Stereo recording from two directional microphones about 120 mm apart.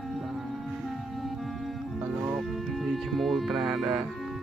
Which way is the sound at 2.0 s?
20° right (ahead or behind).